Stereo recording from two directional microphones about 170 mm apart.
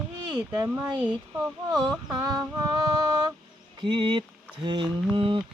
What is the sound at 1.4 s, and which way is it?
Speech, 25° right (ahead or behind).